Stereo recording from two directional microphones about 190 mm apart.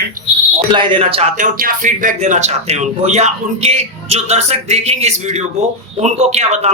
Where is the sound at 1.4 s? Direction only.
45° right (ahead or behind).